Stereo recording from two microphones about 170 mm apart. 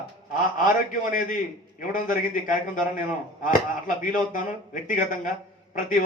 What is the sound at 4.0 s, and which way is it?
A man's voice, 50° left (ahead or behind).